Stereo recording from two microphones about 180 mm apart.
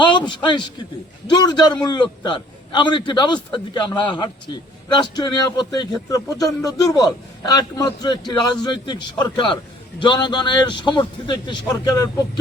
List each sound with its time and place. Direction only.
0.0 s a man's voice: 25° left (ahead or behind)